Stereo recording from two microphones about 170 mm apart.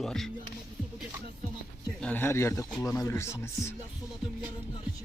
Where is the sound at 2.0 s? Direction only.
10° left (ahead or behind).